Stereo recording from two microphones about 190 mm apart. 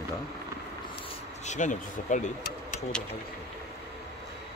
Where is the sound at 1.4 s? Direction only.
40° left (ahead or behind).